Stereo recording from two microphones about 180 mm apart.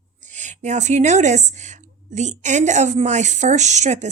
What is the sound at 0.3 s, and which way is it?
A woman's voice, 40° right (ahead or behind).